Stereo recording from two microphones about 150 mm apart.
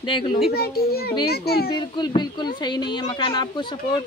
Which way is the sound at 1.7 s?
30° left (ahead or behind).